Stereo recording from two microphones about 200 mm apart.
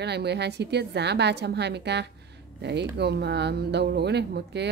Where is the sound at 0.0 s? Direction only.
55° right (ahead or behind).